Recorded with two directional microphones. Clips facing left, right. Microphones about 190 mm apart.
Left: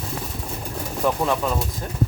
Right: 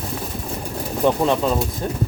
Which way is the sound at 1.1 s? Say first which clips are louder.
Right 4 dB; 25° right (ahead or behind).